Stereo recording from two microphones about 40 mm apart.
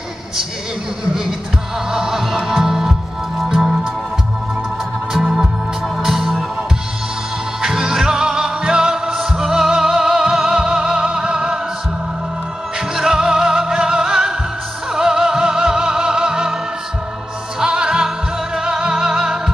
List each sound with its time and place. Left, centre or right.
1.9 s music: centre
5.2 s music: centre
7.6 s music: centre
12.7 s music: centre
17.6 s music: centre